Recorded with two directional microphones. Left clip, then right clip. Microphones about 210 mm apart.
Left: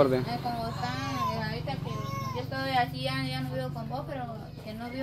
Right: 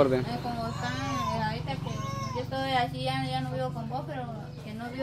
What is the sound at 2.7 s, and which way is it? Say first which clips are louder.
Child singing: left 1 dB; 20° left (ahead or behind).